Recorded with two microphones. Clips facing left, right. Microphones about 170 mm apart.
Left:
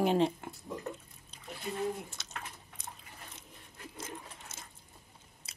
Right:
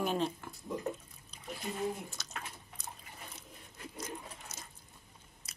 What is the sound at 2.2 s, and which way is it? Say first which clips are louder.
Drip: right 1 dB; 25° left (ahead or behind).